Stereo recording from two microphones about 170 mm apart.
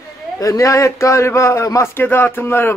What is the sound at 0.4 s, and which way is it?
Speech, 20° left (ahead or behind).